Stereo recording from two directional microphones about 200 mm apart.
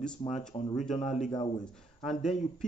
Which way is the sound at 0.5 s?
25° left (ahead or behind).